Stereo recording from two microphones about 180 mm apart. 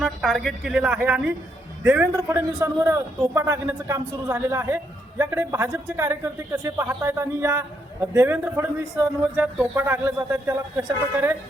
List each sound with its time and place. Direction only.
0.0 s a man's voice: centre (ahead or behind)
2.1 s a man's voice: 15° right (ahead or behind)